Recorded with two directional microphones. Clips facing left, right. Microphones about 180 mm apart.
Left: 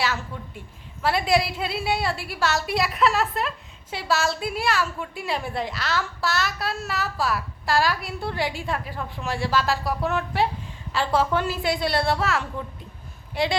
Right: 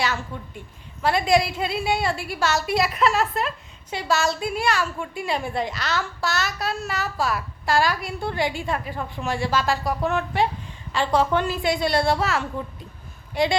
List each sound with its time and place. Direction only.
0.0 s a woman's voice: centre (ahead or behind)